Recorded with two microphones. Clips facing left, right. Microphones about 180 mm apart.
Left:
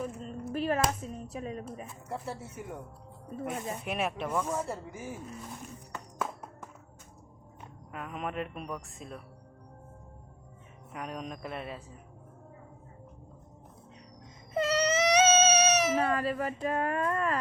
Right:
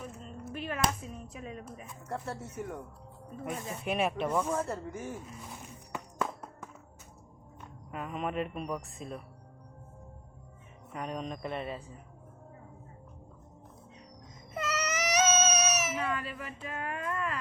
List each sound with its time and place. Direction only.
0.0 s a sound: 40° left (ahead or behind)
0.5 s speech: 40° left (ahead or behind)
2.0 s speech: 10° left (ahead or behind)
3.8 s speech: centre (ahead or behind)
6.1 s music: centre (ahead or behind)
7.9 s speech: centre (ahead or behind)
10.9 s speech: centre (ahead or behind)
14.5 s baby cry: 30° left (ahead or behind)